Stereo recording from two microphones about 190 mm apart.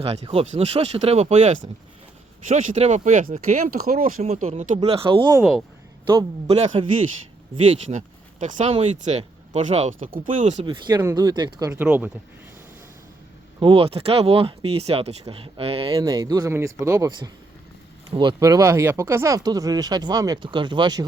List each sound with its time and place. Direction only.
0.0 s speech: 30° right (ahead or behind)
5.4 s speech: centre (ahead or behind)
6.1 s speech: 30° right (ahead or behind)
7.9 s speech: 40° right (ahead or behind); by 12.1 s 10° right (ahead or behind)
13.6 s speech: 30° right (ahead or behind)
16.0 s speech: 20° right (ahead or behind)